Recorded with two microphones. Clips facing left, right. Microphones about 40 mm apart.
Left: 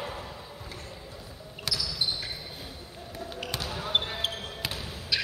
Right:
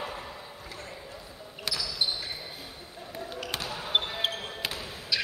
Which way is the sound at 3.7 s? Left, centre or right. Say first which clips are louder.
Even; centre.